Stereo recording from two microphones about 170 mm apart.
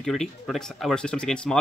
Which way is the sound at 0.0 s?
Centre (ahead or behind).